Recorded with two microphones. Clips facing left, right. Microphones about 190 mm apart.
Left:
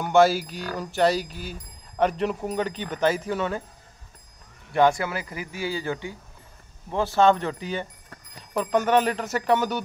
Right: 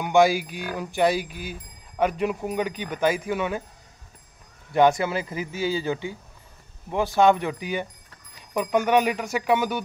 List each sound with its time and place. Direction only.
0.0 s speech: 15° right (ahead or behind)
4.7 s speech: 20° right (ahead or behind)